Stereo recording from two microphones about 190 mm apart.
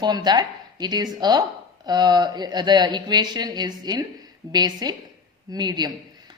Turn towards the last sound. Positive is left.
turn(degrees=-20)  # may be behind; listen again after turning